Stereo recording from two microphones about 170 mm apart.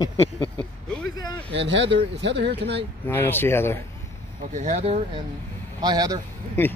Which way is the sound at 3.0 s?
15° left (ahead or behind).